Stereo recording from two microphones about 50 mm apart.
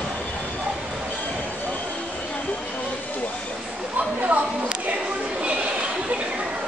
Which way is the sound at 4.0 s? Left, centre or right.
Right.